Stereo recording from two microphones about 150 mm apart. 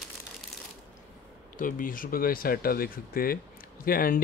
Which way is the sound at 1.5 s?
65° left (ahead or behind).